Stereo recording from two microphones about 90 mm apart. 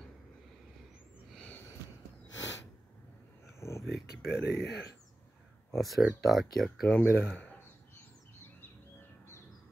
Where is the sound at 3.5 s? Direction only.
30° left (ahead or behind).